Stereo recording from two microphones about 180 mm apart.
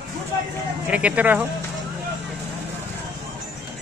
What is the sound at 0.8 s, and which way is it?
Speech, 5° right (ahead or behind).